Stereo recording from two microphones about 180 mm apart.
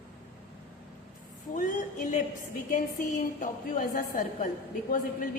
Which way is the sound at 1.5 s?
45° left (ahead or behind).